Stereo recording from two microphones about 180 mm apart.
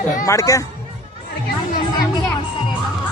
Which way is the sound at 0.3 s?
15° left (ahead or behind).